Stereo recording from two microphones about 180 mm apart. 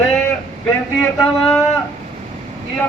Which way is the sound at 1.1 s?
Centre (ahead or behind).